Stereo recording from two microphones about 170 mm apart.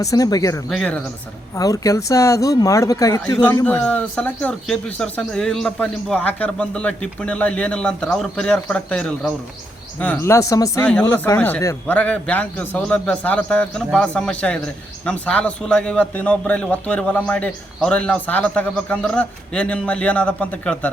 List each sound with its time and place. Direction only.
0.0 s speech: 20° left (ahead or behind)
0.7 s speech: 5° left (ahead or behind)
1.5 s a man's voice: 20° left (ahead or behind)